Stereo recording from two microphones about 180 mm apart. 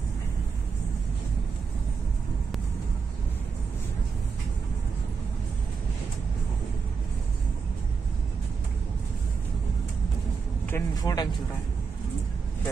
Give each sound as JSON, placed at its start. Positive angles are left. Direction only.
{"t": 10.7, "sound": "speech", "side_deg": 20}